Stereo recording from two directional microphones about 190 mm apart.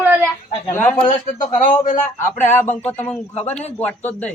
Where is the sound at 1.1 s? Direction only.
45° left (ahead or behind).